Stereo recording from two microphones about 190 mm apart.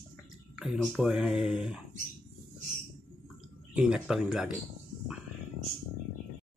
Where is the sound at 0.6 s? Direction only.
5° right (ahead or behind).